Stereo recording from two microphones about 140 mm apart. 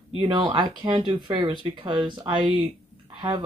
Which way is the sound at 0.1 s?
40° right (ahead or behind).